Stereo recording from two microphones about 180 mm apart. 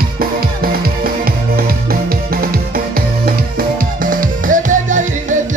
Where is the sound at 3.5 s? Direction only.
50° right (ahead or behind).